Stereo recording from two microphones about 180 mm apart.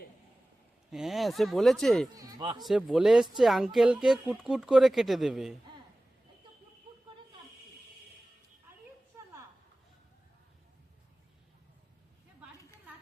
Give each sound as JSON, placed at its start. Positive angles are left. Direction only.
{"t": 0.9, "sound": "speech", "side_deg": 0}
{"t": 2.1, "sound": "speech", "side_deg": -25}
{"t": 2.6, "sound": "speech", "side_deg": 0}